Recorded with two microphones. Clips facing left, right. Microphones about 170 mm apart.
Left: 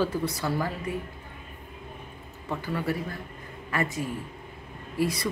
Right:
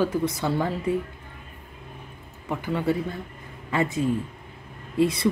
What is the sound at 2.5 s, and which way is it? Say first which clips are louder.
A woman's voice: right 4 dB; 20° right (ahead or behind).